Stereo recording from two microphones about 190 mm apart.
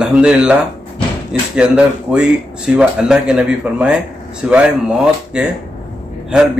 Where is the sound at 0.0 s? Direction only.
5° right (ahead or behind).